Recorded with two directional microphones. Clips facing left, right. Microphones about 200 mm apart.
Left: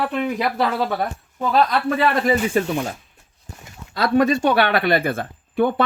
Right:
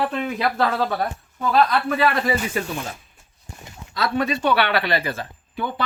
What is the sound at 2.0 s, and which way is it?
Speech, 25° left (ahead or behind).